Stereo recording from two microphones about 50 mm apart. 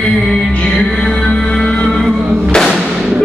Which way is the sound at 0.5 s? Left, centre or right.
Centre.